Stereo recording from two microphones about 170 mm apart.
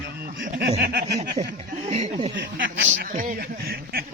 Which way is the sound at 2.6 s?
90° right.